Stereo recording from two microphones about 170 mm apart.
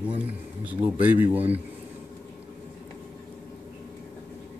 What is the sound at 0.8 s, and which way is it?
Speech, 10° right (ahead or behind).